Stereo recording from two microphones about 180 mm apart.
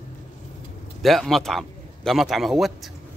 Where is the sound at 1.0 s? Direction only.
Centre (ahead or behind).